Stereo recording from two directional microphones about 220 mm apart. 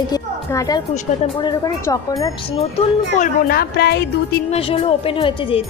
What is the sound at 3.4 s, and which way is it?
Music, 45° left (ahead or behind).